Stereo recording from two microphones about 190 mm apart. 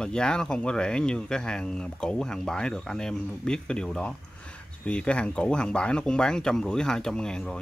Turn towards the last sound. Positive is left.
turn(degrees=5)  # may be behind; listen again after turning